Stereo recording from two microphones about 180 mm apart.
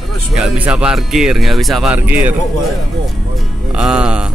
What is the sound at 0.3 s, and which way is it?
Speech, 5° right (ahead or behind).